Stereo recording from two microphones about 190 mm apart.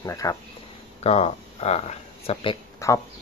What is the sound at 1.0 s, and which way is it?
Speech, 35° left (ahead or behind).